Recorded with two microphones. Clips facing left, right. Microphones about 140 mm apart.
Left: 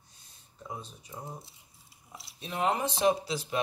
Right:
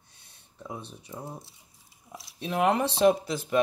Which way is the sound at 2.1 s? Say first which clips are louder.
Right 7 dB; 65° right (ahead or behind).